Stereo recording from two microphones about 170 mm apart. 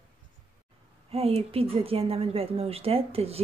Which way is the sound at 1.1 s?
35° right (ahead or behind).